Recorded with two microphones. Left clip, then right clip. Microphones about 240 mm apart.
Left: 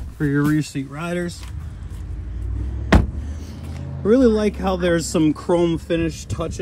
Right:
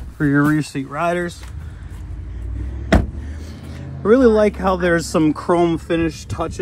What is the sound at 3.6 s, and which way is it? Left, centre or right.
Speech, centre.